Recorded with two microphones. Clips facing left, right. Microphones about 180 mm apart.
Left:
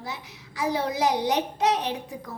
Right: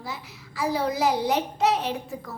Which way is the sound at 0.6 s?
20° left (ahead or behind).